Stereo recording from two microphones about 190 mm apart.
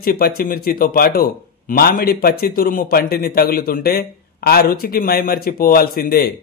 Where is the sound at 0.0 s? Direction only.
50° left (ahead or behind).